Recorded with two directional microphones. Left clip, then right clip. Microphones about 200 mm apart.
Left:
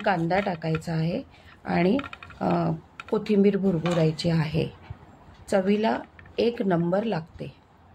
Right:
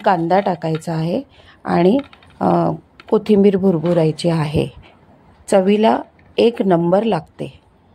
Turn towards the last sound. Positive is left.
turn(degrees=-40)  # may be behind; listen again after turning